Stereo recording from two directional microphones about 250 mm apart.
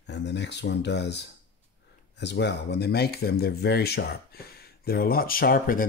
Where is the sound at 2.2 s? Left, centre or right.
Left.